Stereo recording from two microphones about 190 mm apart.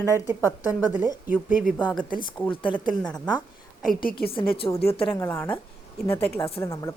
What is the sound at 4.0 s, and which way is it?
Speech, 50° left (ahead or behind).